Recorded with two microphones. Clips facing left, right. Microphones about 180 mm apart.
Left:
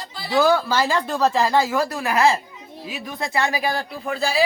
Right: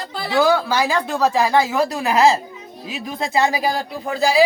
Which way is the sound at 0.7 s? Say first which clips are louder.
Right 1 dB; 10° right (ahead or behind).